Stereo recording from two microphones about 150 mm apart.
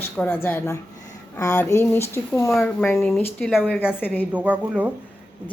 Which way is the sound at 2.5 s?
5° left (ahead or behind).